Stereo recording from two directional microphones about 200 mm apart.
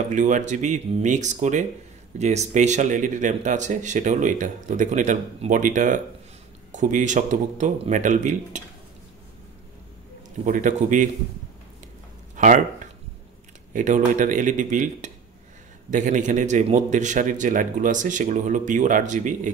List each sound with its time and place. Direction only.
0.1 s speech: 40° right (ahead or behind)
10.4 s speech: 40° right (ahead or behind)
12.4 s speech: 40° right (ahead or behind)